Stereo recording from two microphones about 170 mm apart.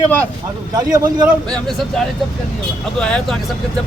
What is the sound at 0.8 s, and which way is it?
Speech, 20° right (ahead or behind).